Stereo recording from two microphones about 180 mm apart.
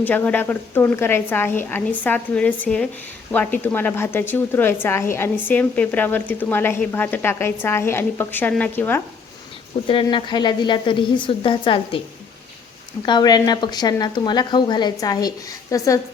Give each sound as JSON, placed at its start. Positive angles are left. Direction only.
{"t": 0.0, "sound": "a woman's voice", "side_deg": 10}
{"t": 9.8, "sound": "a woman's voice", "side_deg": 30}
{"t": 13.1, "sound": "a woman's voice", "side_deg": 25}